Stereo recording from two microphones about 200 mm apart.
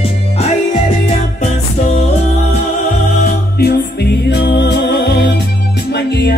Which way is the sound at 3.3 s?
50° left (ahead or behind).